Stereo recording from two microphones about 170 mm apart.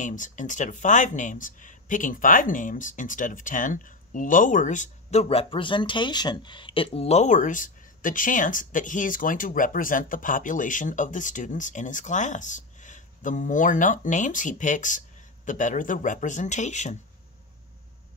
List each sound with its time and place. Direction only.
0.0 s speech: 50° left (ahead or behind)